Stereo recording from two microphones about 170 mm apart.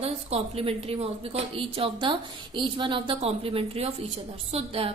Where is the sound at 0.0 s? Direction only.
35° right (ahead or behind).